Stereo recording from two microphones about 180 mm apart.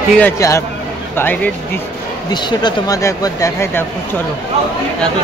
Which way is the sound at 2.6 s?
20° left (ahead or behind).